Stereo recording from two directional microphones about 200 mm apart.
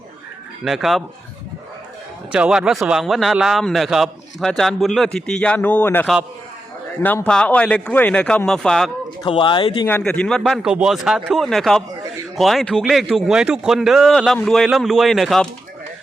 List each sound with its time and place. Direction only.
0.6 s a man's voice: centre (ahead or behind)
2.3 s a man's voice: 5° right (ahead or behind)
9.2 s speech: 25° left (ahead or behind)
9.8 s a man's voice: 5° left (ahead or behind)